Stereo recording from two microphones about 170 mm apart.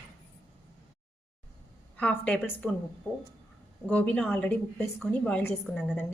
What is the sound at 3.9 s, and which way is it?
A woman's voice, 5° left (ahead or behind).